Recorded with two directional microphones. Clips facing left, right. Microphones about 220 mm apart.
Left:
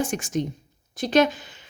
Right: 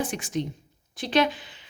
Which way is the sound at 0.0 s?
45° left (ahead or behind).